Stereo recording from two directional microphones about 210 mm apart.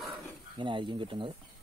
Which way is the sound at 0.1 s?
25° right (ahead or behind).